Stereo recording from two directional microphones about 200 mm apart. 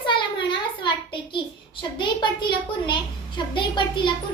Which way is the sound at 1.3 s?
25° left (ahead or behind).